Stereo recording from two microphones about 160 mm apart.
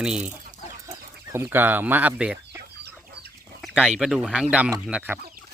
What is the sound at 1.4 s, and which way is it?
Speech, 10° right (ahead or behind).